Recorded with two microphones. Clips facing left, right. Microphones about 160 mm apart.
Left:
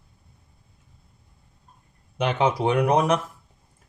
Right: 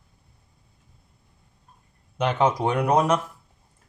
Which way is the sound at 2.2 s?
10° left (ahead or behind).